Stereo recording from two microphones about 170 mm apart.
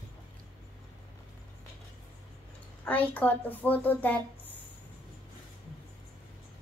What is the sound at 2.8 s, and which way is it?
A woman's voice, 10° left (ahead or behind).